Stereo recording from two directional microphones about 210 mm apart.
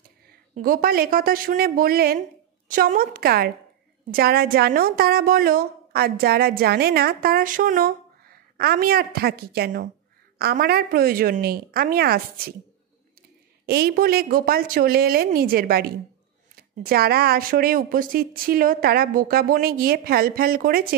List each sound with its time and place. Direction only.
0.3 s a woman's voice: 45° right (ahead or behind)
13.7 s a woman's voice: 50° right (ahead or behind)